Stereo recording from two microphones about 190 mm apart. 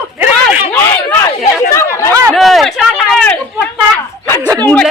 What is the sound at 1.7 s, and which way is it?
Chatter, 15° left (ahead or behind).